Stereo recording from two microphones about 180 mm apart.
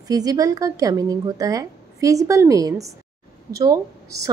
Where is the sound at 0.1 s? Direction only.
20° right (ahead or behind).